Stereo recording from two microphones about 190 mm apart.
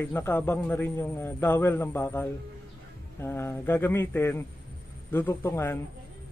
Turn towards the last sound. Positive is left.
turn(degrees=15)  # may be behind; listen again after turning